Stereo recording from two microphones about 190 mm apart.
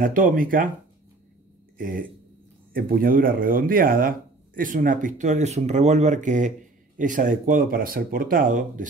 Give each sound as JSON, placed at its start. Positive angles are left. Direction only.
{"t": 0.0, "sound": "speech", "side_deg": -45}
{"t": 1.8, "sound": "speech", "side_deg": -45}